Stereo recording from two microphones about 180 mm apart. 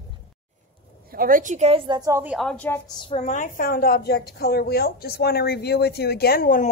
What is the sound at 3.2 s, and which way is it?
A woman's voice, 45° left (ahead or behind).